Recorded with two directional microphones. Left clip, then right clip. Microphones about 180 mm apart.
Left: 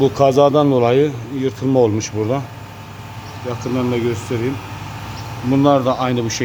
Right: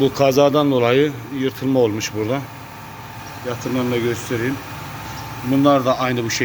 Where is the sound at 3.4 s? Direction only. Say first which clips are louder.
Left 1 dB; centre (ahead or behind).